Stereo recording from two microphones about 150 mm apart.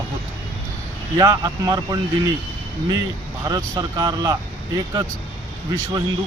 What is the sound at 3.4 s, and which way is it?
Speech, 25° right (ahead or behind).